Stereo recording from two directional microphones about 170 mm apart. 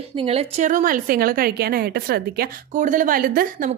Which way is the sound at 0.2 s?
35° right (ahead or behind).